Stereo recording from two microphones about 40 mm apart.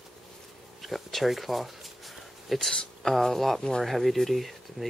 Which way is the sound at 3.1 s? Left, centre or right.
Centre.